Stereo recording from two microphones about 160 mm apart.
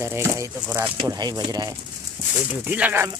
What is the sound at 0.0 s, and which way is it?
Speech, 15° right (ahead or behind).